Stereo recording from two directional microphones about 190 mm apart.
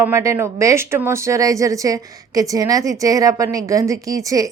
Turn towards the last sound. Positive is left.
turn(degrees=-15)  # may be behind; listen again after turning